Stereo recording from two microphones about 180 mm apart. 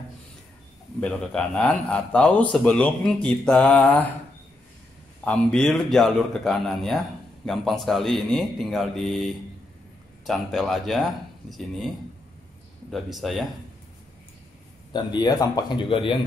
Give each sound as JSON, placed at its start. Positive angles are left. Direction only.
{"t": 1.0, "sound": "speech", "side_deg": 5}
{"t": 5.2, "sound": "speech", "side_deg": 5}
{"t": 12.9, "sound": "speech", "side_deg": 0}
{"t": 14.9, "sound": "a man's voice", "side_deg": 25}